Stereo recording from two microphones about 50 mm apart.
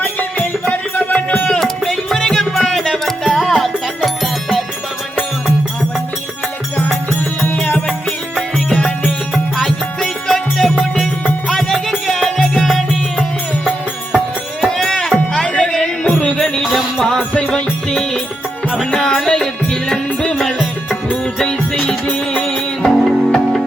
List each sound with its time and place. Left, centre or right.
0.0 s music: left
1.5 s music: centre
7.4 s music: left
9.0 s music: centre
14.7 s music: centre
16.6 s music: centre
21.4 s music: left
22.8 s music: centre